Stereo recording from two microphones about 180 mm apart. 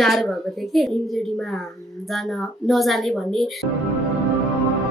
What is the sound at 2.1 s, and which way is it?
A woman's voice, centre (ahead or behind).